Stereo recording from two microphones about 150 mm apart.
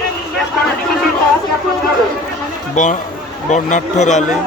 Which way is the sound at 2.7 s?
55° left (ahead or behind).